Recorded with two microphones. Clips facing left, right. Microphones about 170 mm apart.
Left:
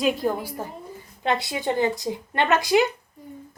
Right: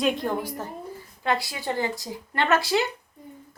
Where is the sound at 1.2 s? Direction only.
20° left (ahead or behind).